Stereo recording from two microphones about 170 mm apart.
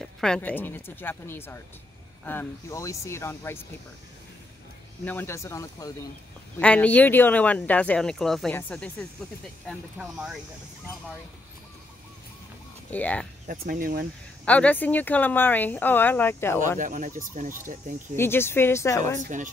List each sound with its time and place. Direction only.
0.0 s speech: 5° left (ahead or behind)
5.0 s speech: 10° left (ahead or behind)
6.6 s speech: 10° left (ahead or behind)
9.7 s speech: 5° right (ahead or behind)
12.9 s speech: 10° left (ahead or behind)
13.5 s speech: 55° right (ahead or behind)
14.4 s speech: 10° left (ahead or behind)
16.7 s speech: 50° right (ahead or behind)
18.1 s speech: 15° left (ahead or behind)
19.2 s speech: 50° right (ahead or behind)